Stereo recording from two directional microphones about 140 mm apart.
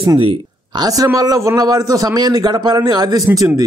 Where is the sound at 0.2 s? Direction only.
40° right (ahead or behind).